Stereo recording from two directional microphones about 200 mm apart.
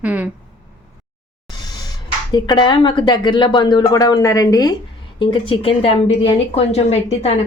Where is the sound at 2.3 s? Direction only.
20° left (ahead or behind).